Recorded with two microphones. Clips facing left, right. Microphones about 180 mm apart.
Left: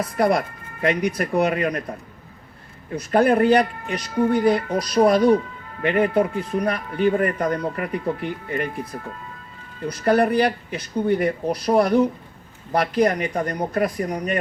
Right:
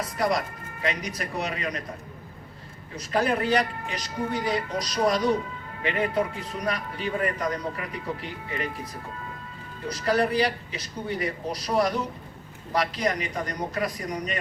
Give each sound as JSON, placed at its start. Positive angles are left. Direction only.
{"t": 0.0, "sound": "speech", "side_deg": 55}
{"t": 2.9, "sound": "speech", "side_deg": 55}